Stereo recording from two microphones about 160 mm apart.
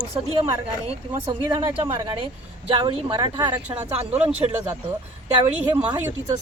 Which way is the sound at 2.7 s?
35° right (ahead or behind).